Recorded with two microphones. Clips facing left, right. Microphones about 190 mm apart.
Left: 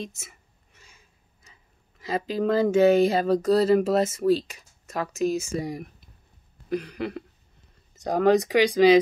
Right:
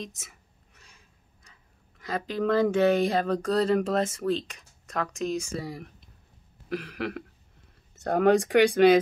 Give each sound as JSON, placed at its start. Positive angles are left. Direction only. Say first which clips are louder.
{"t": 0.0, "sound": "a sound", "louder": "left 3 dB", "side_deg": 0}
{"t": 2.0, "sound": "speech", "louder": "left 3 dB", "side_deg": 5}
{"t": 5.6, "sound": "speech", "louder": "left 5 dB", "side_deg": 15}
{"t": 8.2, "sound": "speech", "louder": "even", "side_deg": -10}